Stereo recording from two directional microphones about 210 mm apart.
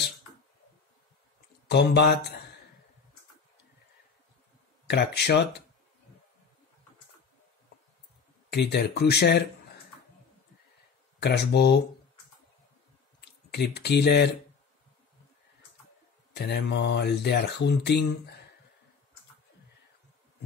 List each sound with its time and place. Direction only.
1.7 s speech: 55° left (ahead or behind)
4.8 s speech: 55° left (ahead or behind)
8.5 s speech: 50° left (ahead or behind)
11.1 s speech: 50° left (ahead or behind)
13.5 s speech: 50° left (ahead or behind)
16.3 s speech: 50° left (ahead or behind)